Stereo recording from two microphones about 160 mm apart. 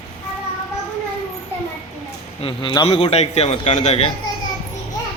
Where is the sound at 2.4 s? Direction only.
35° left (ahead or behind).